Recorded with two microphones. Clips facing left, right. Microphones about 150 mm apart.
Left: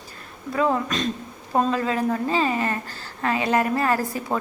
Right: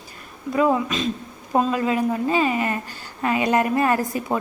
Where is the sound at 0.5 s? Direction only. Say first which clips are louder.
Right 3 dB; 15° right (ahead or behind).